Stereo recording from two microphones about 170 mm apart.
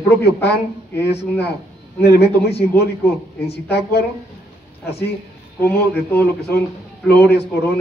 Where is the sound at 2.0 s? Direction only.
75° left (ahead or behind).